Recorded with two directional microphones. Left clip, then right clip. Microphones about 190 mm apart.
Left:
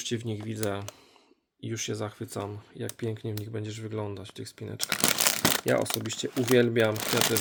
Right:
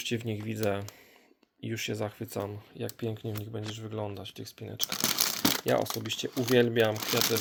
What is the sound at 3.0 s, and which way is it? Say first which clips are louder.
Speech: left 4 dB; 10° left (ahead or behind).